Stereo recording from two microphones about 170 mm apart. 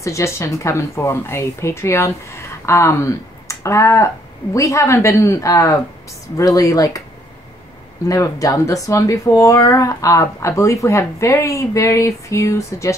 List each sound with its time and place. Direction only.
0.0 s speech: 15° left (ahead or behind)
8.1 s speech: 20° left (ahead or behind)